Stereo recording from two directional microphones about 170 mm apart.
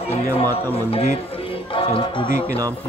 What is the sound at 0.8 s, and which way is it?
Speech, 35° left (ahead or behind).